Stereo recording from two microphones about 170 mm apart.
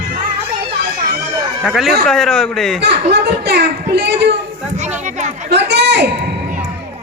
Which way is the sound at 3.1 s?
90° right.